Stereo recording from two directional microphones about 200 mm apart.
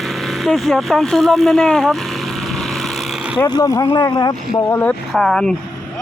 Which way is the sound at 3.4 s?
20° left (ahead or behind).